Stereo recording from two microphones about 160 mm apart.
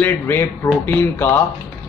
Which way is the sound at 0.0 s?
15° left (ahead or behind).